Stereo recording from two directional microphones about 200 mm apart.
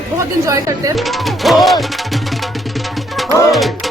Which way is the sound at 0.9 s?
Centre (ahead or behind).